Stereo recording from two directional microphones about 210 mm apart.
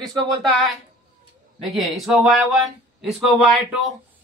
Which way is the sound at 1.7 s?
Centre (ahead or behind).